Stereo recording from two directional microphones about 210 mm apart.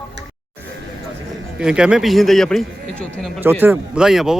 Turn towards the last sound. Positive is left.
turn(degrees=0)  # may be behind; listen again after turning